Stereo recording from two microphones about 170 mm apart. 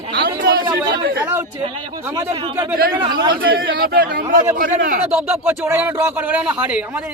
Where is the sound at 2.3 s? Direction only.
30° right (ahead or behind).